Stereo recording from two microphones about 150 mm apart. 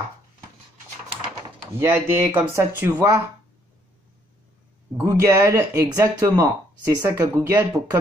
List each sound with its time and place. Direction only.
1.8 s speech: 20° right (ahead or behind)
4.9 s speech: 20° right (ahead or behind)